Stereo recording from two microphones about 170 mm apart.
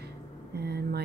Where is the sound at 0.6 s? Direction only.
70° right (ahead or behind).